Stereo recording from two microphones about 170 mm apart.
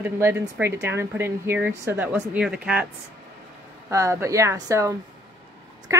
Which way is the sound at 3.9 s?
20° right (ahead or behind).